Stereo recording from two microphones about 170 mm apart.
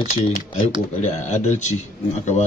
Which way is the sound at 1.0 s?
45° left (ahead or behind).